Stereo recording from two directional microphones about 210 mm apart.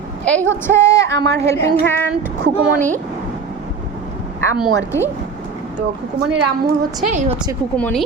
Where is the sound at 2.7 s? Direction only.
40° right (ahead or behind).